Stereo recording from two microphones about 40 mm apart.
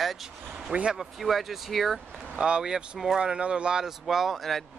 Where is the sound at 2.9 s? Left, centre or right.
Centre.